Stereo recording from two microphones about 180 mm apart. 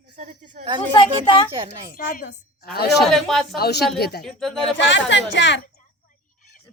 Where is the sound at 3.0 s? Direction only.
Centre (ahead or behind).